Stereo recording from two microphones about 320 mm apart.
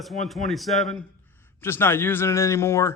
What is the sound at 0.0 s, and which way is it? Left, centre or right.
Speech, centre.